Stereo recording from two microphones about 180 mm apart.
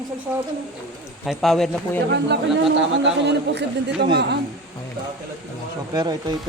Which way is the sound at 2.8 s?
80° right.